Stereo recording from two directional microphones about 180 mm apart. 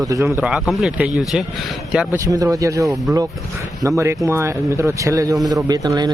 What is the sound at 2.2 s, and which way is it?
A man's voice, 20° right (ahead or behind).